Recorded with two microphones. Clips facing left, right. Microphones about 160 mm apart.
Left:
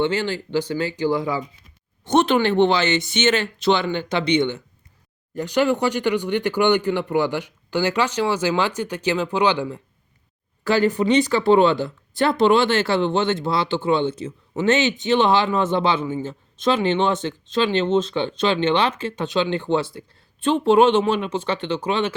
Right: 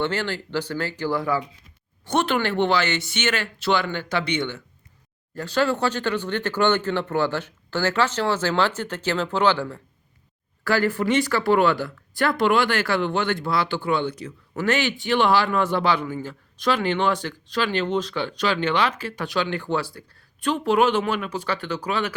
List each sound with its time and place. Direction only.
0.0 s speech: 15° left (ahead or behind)